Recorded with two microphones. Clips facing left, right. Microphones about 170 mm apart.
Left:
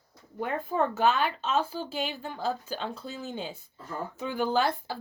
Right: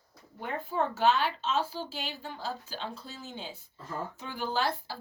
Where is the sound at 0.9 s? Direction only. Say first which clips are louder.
Left 1 dB; 55° left (ahead or behind).